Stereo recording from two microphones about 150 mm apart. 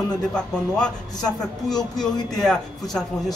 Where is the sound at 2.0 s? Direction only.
25° left (ahead or behind).